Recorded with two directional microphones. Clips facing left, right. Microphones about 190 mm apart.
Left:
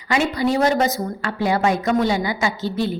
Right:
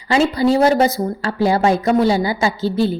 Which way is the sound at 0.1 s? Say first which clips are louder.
Right 5 dB; 30° right (ahead or behind).